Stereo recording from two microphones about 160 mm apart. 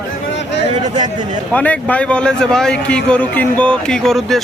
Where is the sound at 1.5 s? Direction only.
10° left (ahead or behind).